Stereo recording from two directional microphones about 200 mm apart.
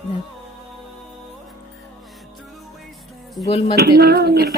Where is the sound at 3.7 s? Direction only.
50° right (ahead or behind).